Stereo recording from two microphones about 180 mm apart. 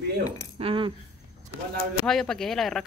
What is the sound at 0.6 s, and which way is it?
Speech, 30° right (ahead or behind).